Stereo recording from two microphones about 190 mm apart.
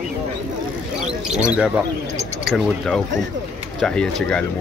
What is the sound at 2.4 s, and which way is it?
Speech, centre (ahead or behind).